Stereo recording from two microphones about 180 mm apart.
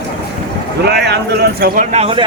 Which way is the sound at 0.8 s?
70° right (ahead or behind).